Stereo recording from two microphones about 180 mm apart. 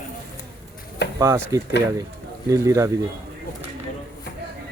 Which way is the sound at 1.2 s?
15° right (ahead or behind).